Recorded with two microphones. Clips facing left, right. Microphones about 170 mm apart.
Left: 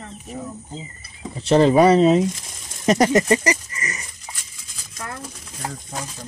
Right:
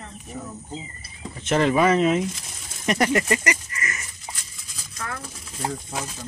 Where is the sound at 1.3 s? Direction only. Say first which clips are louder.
Left 6 dB; 30° left (ahead or behind).